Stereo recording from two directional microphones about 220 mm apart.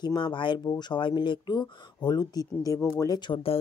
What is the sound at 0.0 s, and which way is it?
A woman's voice, 20° left (ahead or behind).